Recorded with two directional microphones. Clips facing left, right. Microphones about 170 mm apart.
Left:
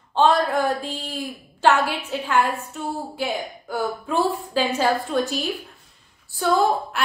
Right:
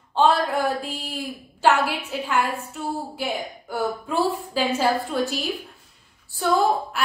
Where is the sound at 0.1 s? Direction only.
5° right (ahead or behind).